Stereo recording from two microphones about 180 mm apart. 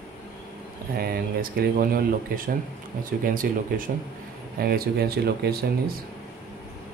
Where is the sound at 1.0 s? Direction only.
55° right (ahead or behind).